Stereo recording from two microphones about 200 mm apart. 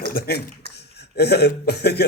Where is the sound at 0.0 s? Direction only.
50° left (ahead or behind).